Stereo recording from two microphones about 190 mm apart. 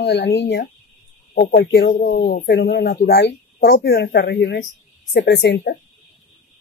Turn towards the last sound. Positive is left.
turn(degrees=65)  # may be behind; listen again after turning